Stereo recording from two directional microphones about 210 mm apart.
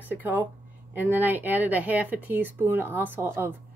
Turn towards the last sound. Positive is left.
turn(degrees=-10)  # may be behind; listen again after turning